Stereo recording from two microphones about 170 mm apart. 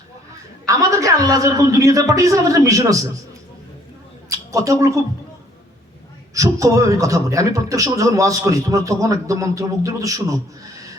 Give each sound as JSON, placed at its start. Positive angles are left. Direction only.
{"t": 0.6, "sound": "a man's voice", "side_deg": -20}
{"t": 4.3, "sound": "a woman's voice", "side_deg": -20}
{"t": 6.3, "sound": "a man's voice", "side_deg": -20}